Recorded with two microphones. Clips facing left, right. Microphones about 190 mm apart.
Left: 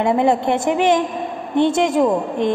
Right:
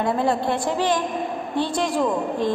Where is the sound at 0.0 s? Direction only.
20° left (ahead or behind).